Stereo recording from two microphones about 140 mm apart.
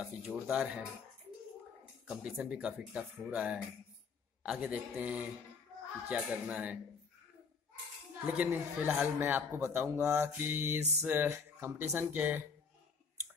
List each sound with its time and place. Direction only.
0.0 s speech: 5° right (ahead or behind)
2.0 s mantra: 5° right (ahead or behind)
8.3 s mantra: 10° right (ahead or behind)